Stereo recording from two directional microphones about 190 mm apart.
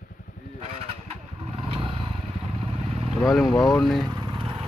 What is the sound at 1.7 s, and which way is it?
Motorcycle, 30° right (ahead or behind).